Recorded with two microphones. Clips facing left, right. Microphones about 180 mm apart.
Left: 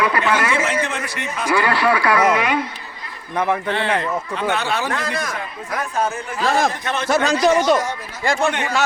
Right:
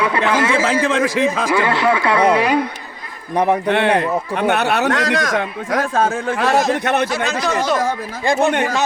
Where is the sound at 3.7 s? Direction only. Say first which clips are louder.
Right 5 dB; 65° right (ahead or behind); by 6.6 s 85° right.